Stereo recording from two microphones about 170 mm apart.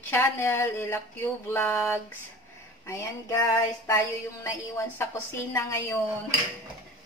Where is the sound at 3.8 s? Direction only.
20° left (ahead or behind).